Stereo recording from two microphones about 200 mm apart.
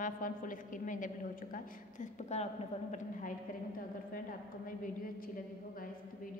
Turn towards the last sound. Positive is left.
turn(degrees=45)  # may be behind; listen again after turning